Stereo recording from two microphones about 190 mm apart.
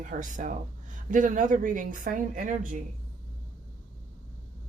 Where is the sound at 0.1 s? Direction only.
45° right (ahead or behind).